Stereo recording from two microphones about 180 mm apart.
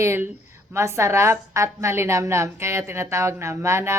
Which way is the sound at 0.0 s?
15° right (ahead or behind).